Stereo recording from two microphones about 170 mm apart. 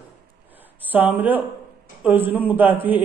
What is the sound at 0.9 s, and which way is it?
A woman's voice, 10° right (ahead or behind).